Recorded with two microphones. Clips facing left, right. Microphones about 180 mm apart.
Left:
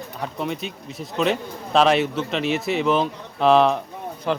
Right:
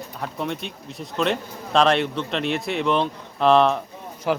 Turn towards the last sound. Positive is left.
turn(degrees=-5)  # may be behind; listen again after turning